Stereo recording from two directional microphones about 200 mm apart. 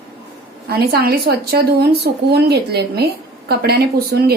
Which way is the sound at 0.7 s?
50° right (ahead or behind).